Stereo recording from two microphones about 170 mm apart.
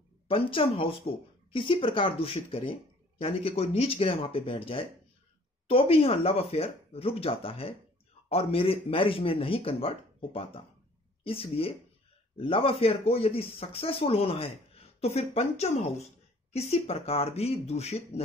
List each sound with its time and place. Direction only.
0.3 s speech: 30° left (ahead or behind)